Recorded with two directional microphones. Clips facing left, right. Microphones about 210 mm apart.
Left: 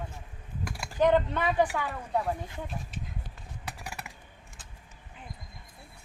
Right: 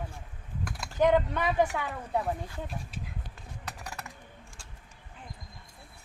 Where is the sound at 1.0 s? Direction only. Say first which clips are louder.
Even; 10° right (ahead or behind).